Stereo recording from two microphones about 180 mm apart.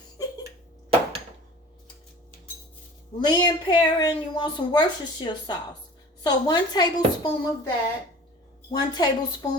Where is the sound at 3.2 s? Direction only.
25° left (ahead or behind).